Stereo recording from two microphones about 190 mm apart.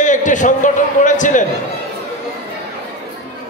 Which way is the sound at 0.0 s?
40° left (ahead or behind).